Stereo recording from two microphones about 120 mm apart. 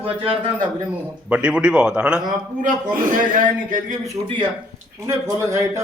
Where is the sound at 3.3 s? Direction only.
90° right.